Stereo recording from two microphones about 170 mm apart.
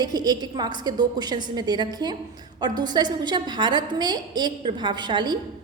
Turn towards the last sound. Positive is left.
turn(degrees=-25)  # may be behind; listen again after turning